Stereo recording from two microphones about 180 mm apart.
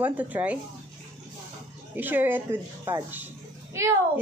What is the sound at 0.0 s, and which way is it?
Speech, 10° right (ahead or behind).